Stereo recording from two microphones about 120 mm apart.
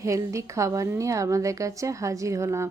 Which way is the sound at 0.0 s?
25° right (ahead or behind).